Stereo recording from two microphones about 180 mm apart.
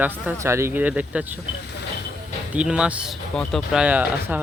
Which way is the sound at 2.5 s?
5° right (ahead or behind).